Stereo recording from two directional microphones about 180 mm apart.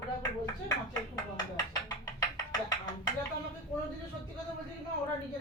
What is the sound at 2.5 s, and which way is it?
Music, 20° left (ahead or behind).